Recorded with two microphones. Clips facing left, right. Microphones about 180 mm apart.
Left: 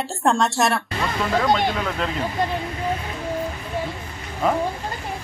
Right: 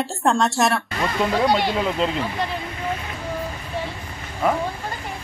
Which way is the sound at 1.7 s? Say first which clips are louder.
Right 4 dB; 25° right (ahead or behind).